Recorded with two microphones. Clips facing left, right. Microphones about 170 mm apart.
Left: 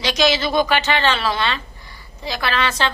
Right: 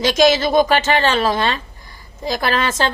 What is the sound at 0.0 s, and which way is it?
A woman's voice, 45° right (ahead or behind).